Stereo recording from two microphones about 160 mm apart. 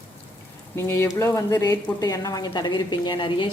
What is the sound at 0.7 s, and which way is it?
Speech, 15° left (ahead or behind).